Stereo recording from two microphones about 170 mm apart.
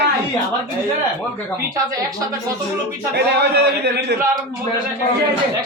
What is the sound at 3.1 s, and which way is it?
A man's voice, 75° right (ahead or behind).